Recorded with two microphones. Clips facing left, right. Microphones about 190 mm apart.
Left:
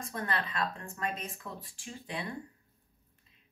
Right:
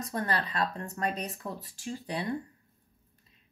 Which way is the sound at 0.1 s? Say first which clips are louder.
Right 3 dB; 40° right (ahead or behind).